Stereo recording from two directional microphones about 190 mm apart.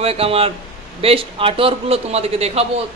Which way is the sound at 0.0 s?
30° right (ahead or behind).